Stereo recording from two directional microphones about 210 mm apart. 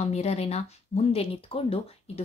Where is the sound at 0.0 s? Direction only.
30° left (ahead or behind).